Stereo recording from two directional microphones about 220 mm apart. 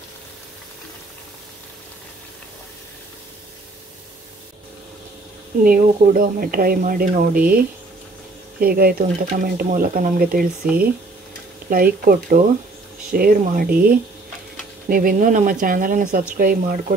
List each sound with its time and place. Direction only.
5.6 s speech: 40° right (ahead or behind)
11.7 s speech: 40° right (ahead or behind)